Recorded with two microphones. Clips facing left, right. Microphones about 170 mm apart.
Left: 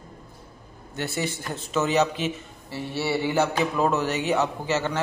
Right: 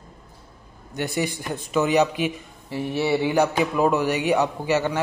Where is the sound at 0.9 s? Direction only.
15° right (ahead or behind).